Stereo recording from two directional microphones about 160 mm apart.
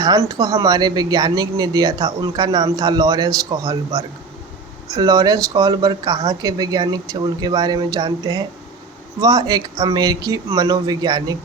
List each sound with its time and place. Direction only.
0.0 s speech: 25° right (ahead or behind)